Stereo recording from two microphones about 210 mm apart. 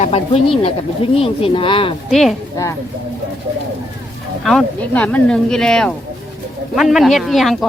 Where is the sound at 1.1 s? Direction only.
25° left (ahead or behind).